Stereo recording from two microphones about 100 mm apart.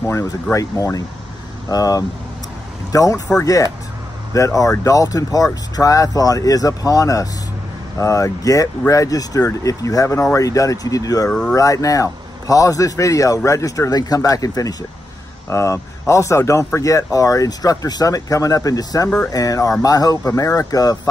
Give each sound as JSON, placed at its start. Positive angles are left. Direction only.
{"t": 0.0, "sound": "speech", "side_deg": 30}
{"t": 4.3, "sound": "speech", "side_deg": 30}
{"t": 11.2, "sound": "speech", "side_deg": 10}
{"t": 11.5, "sound": "speech", "side_deg": 35}
{"t": 19.0, "sound": "speech", "side_deg": 15}
{"t": 19.3, "sound": "speech", "side_deg": 35}